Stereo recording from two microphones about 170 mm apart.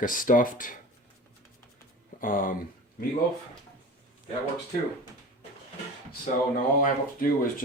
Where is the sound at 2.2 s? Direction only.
55° left (ahead or behind).